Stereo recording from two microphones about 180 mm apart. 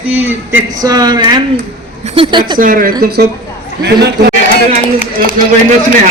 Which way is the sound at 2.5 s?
50° right (ahead or behind).